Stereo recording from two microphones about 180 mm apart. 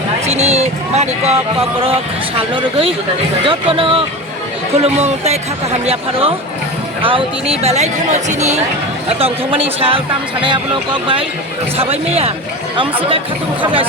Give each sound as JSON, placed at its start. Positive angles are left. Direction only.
{"t": 0.3, "sound": "speech", "side_deg": -35}
{"t": 3.4, "sound": "speech", "side_deg": -30}